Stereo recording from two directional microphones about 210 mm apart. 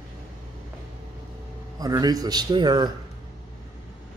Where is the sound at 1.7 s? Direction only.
15° right (ahead or behind).